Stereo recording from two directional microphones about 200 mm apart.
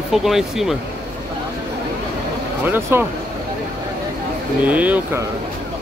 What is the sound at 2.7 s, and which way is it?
Speech, 10° right (ahead or behind).